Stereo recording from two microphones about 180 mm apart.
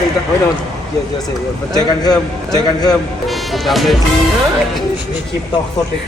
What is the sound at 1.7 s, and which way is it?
A man's voice, 20° left (ahead or behind).